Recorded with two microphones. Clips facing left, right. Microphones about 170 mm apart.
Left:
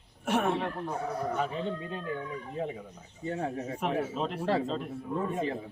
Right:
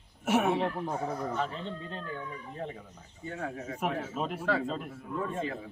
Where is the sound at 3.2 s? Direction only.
35° left (ahead or behind).